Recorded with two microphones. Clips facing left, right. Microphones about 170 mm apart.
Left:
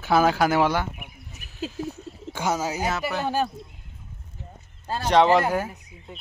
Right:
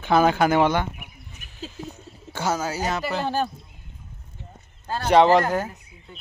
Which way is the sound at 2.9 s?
Centre (ahead or behind).